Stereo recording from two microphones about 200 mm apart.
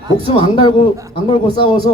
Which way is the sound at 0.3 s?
25° left (ahead or behind).